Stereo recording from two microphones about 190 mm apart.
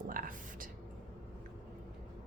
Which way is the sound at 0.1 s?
45° right (ahead or behind).